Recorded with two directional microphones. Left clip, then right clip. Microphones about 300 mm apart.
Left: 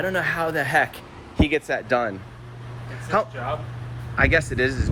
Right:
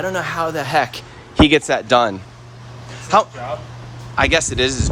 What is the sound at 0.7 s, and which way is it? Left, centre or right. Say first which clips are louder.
Speech: right 4 dB; right.